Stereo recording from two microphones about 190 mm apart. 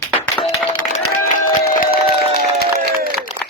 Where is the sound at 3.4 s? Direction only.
25° right (ahead or behind).